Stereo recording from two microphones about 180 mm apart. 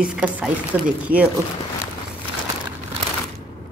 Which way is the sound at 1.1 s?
50° right (ahead or behind).